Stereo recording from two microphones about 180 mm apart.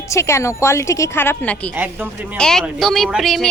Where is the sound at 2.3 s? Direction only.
5° left (ahead or behind).